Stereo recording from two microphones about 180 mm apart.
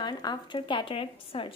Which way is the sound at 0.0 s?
25° left (ahead or behind).